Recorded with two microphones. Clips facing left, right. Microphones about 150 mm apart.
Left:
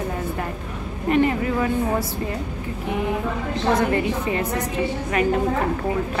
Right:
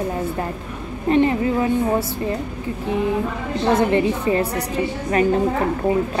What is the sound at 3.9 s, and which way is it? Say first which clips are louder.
Speech: right 4 dB; 35° right (ahead or behind).